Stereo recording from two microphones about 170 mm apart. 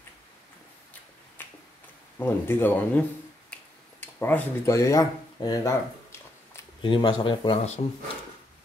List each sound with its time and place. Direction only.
1.4 s finger snapping: 10° left (ahead or behind)
2.1 s speech: 10° left (ahead or behind)
3.5 s finger snapping: 10° left (ahead or behind)
4.0 s speech: 10° left (ahead or behind)
6.8 s speech: 30° left (ahead or behind)